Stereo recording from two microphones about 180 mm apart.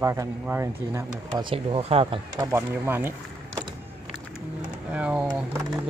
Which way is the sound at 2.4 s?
15° right (ahead or behind).